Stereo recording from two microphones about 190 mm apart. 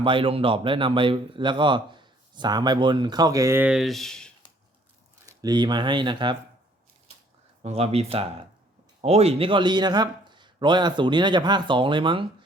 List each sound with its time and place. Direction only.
0.0 s a man's voice: 25° right (ahead or behind); by 4.3 s centre (ahead or behind)
5.2 s speech: 20° right (ahead or behind)
7.6 s a man's voice: 35° right (ahead or behind)